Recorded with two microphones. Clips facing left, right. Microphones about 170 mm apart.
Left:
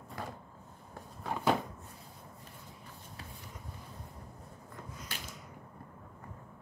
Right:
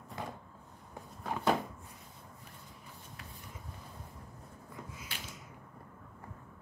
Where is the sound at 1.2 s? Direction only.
5° left (ahead or behind).